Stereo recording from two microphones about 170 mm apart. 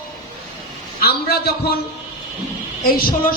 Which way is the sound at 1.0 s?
70° left (ahead or behind).